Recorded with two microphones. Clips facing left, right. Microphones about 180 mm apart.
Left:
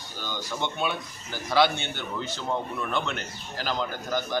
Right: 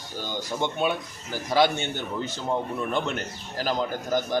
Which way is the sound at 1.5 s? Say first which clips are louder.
Right 1 dB; 45° right (ahead or behind).